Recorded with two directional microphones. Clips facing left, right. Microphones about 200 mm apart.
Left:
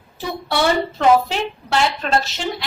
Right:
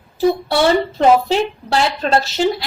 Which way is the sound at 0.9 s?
35° right (ahead or behind).